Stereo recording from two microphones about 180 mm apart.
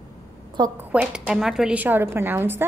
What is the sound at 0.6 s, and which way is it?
Speech, 25° right (ahead or behind).